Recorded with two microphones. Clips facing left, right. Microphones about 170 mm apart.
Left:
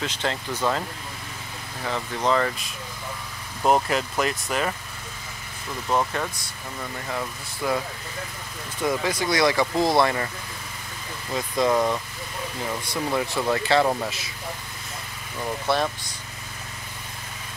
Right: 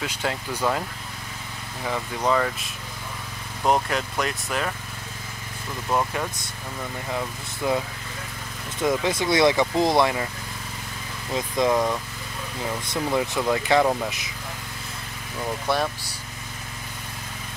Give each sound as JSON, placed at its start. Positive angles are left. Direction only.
{"t": 0.0, "sound": "speech", "side_deg": -10}
{"t": 1.9, "sound": "speech", "side_deg": -10}
{"t": 5.9, "sound": "speech", "side_deg": -10}
{"t": 7.1, "sound": "speech", "side_deg": -15}
{"t": 8.8, "sound": "speech", "side_deg": -20}
{"t": 11.3, "sound": "speech", "side_deg": -15}
{"t": 11.7, "sound": "speech", "side_deg": 5}
{"t": 12.9, "sound": "speech", "side_deg": -15}
{"t": 15.7, "sound": "speech", "side_deg": -10}